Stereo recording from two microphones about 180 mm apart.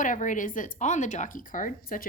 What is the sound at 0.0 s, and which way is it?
Speech, 45° left (ahead or behind).